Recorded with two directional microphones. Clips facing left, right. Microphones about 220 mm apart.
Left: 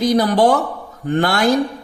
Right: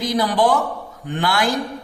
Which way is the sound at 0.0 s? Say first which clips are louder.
Left 4 dB; 40° left (ahead or behind).